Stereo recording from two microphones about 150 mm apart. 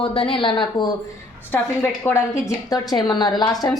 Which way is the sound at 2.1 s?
15° left (ahead or behind).